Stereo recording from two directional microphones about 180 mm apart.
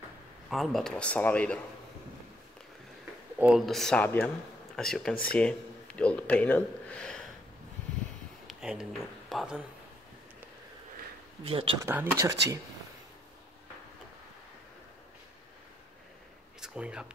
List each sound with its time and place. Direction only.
0.5 s speech: centre (ahead or behind)
3.3 s speech: 5° right (ahead or behind)
8.5 s a sound: 5° right (ahead or behind)
9.3 s speech: centre (ahead or behind)
11.4 s speech: 30° right (ahead or behind)
11.8 s speech: 10° right (ahead or behind)
16.6 s speech: 5° right (ahead or behind)